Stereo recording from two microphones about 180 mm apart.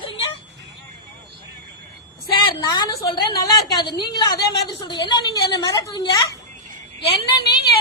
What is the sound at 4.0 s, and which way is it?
A woman's voice, 25° left (ahead or behind).